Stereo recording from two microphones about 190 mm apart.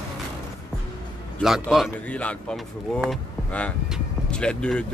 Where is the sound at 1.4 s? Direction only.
Centre (ahead or behind).